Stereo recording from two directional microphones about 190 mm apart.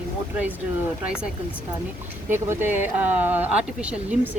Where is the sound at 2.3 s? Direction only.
10° right (ahead or behind).